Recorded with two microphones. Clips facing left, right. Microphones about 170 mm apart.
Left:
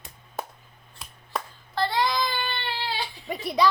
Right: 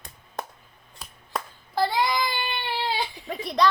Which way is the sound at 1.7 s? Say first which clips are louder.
Right 1 dB; 10° right (ahead or behind).